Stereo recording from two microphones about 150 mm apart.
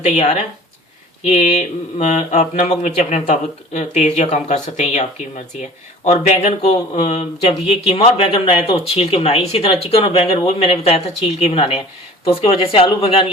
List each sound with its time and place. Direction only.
0.0 s speech: 40° left (ahead or behind)
6.1 s speech: 45° left (ahead or behind)